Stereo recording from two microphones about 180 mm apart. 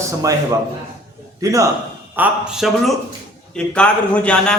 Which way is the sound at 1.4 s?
20° right (ahead or behind).